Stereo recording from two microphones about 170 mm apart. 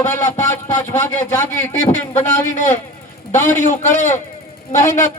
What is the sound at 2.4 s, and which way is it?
Speech, 45° left (ahead or behind).